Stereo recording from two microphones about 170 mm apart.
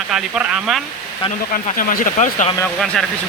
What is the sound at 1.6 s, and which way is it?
Speech, 50° left (ahead or behind).